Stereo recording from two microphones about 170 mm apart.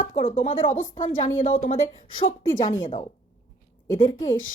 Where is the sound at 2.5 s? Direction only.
30° left (ahead or behind).